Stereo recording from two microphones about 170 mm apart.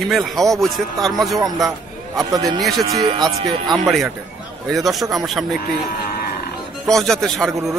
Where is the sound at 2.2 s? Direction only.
20° right (ahead or behind).